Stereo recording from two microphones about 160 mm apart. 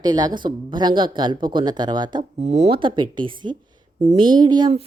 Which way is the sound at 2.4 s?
45° right (ahead or behind).